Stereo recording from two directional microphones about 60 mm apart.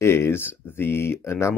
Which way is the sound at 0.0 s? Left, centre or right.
Left.